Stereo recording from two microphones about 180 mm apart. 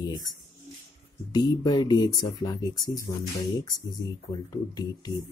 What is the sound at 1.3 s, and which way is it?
Speech, 20° left (ahead or behind).